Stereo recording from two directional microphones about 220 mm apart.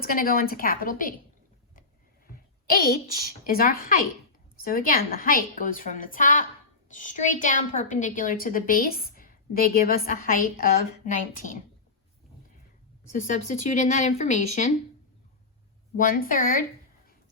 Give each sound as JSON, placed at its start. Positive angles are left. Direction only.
{"t": 0.0, "sound": "a woman's voice", "side_deg": 40}
{"t": 2.3, "sound": "a woman's voice", "side_deg": 40}
{"t": 13.1, "sound": "a woman's voice", "side_deg": 35}
{"t": 16.0, "sound": "a woman's voice", "side_deg": 40}